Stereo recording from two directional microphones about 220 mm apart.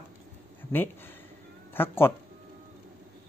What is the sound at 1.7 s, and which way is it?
Speech, 10° left (ahead or behind).